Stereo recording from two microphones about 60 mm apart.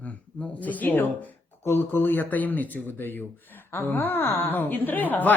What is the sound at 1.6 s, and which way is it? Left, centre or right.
Speech, left.